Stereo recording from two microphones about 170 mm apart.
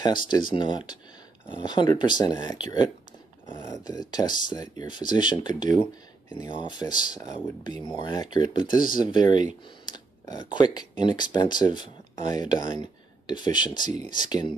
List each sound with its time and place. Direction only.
0.3 s speech: 25° left (ahead or behind)